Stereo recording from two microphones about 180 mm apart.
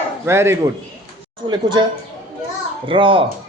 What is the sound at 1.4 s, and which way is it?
Speech, 25° right (ahead or behind).